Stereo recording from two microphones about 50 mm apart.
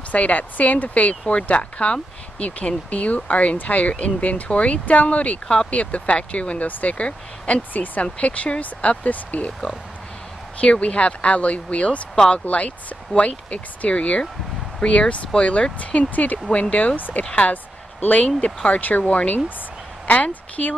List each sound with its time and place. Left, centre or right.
0.1 s speech: left
10.6 s speech: left
17.2 s a woman's voice: left